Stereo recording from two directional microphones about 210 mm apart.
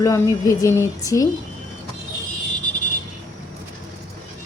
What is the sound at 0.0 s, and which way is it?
A woman's voice, 15° left (ahead or behind).